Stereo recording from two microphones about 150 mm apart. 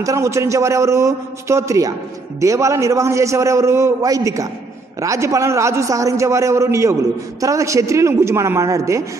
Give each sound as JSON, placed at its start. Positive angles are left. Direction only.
{"t": 0.0, "sound": "a man's voice", "side_deg": -20}